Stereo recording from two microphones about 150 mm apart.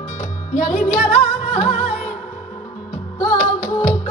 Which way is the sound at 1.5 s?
50° left (ahead or behind).